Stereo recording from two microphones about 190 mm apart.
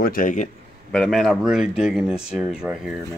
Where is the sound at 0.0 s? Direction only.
45° left (ahead or behind).